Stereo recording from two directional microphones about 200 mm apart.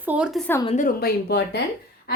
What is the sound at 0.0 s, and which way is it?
Speech, 5° right (ahead or behind).